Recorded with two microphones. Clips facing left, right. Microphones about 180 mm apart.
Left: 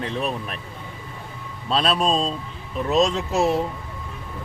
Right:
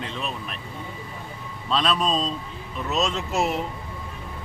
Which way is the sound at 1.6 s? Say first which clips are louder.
Left 2 dB; 35° left (ahead or behind).